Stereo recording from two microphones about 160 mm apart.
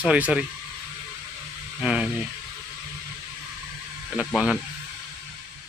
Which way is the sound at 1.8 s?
5° right (ahead or behind).